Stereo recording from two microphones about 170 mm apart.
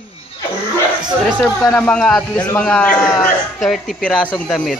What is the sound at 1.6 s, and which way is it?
A man's voice, 10° left (ahead or behind).